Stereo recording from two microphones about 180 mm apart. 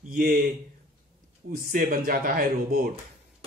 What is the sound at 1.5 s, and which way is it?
Speech, 50° right (ahead or behind).